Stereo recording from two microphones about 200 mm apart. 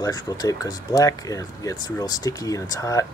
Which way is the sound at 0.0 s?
20° left (ahead or behind).